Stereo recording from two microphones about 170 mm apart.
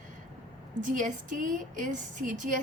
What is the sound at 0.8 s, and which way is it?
A woman's voice, 50° right (ahead or behind).